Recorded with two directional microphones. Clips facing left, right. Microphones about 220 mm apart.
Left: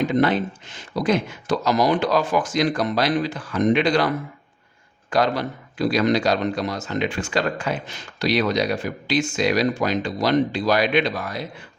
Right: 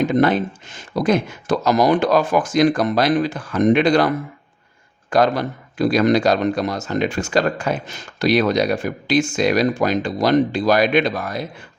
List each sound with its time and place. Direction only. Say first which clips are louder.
0.0 s a man's voice: right 3 dB; 50° right (ahead or behind)
5.1 s a man's voice: right 4 dB; 50° right (ahead or behind)